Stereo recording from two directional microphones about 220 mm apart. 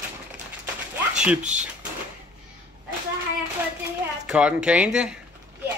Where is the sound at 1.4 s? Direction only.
35° right (ahead or behind).